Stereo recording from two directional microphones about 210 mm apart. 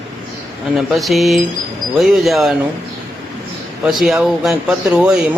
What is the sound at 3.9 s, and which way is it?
Speech, centre (ahead or behind).